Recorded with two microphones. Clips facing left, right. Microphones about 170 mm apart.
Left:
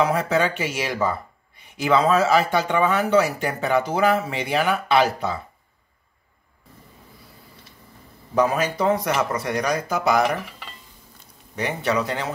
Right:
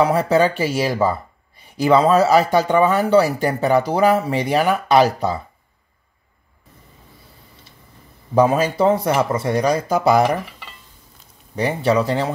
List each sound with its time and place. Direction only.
0.0 s speech: 35° right (ahead or behind)
8.4 s speech: 30° right (ahead or behind)
11.5 s speech: 30° right (ahead or behind)